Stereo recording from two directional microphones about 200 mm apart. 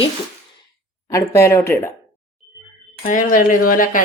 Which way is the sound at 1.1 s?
15° left (ahead or behind).